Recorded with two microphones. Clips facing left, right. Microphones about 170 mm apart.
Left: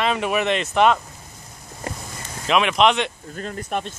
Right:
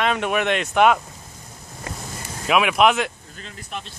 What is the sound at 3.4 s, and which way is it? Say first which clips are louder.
Speech: left 8 dB; 50° left (ahead or behind).